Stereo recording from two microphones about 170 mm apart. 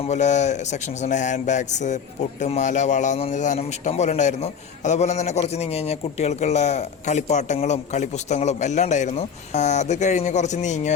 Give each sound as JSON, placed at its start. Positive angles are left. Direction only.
{"t": 0.1, "sound": "a man's voice", "side_deg": 45}